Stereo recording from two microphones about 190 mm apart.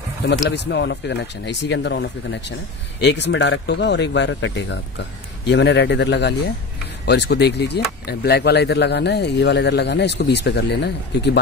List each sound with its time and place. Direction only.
0.3 s speech: 65° left (ahead or behind)